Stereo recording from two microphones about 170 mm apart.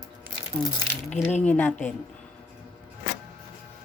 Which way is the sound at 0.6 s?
30° right (ahead or behind).